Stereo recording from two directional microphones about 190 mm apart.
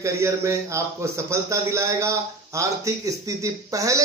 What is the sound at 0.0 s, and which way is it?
A man's voice, 15° right (ahead or behind).